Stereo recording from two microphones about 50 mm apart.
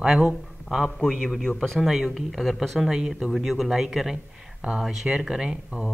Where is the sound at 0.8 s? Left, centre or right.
Centre.